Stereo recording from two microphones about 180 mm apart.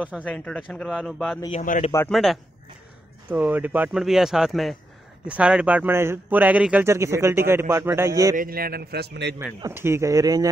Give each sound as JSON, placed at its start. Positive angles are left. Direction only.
{"t": 0.2, "sound": "speech", "side_deg": 5}
{"t": 1.5, "sound": "a man's voice", "side_deg": 40}
{"t": 2.0, "sound": "speech", "side_deg": 0}
{"t": 8.4, "sound": "a man's voice", "side_deg": -55}
{"t": 9.6, "sound": "speech", "side_deg": -15}